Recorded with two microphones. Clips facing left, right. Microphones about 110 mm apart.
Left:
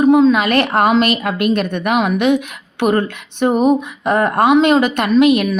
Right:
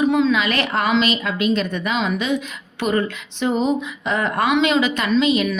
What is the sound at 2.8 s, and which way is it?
Speech, 55° left (ahead or behind).